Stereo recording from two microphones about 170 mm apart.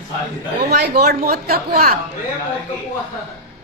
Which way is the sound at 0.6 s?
75° right (ahead or behind).